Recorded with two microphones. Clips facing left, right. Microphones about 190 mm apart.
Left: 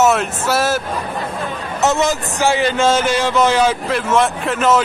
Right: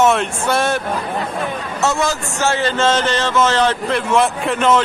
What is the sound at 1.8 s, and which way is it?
A man's voice, 20° left (ahead or behind).